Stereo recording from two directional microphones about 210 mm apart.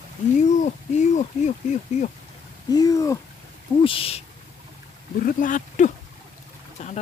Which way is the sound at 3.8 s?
25° left (ahead or behind).